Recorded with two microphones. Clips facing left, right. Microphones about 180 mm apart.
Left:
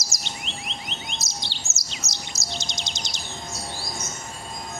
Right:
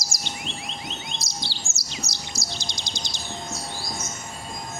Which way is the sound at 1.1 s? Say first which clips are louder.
Right 1 dB; 20° left (ahead or behind).